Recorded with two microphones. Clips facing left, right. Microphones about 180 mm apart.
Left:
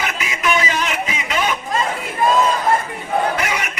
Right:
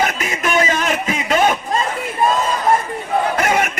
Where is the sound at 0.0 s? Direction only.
45° right (ahead or behind).